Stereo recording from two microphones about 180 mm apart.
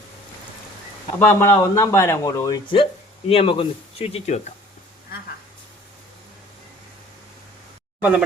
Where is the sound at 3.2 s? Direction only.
30° left (ahead or behind).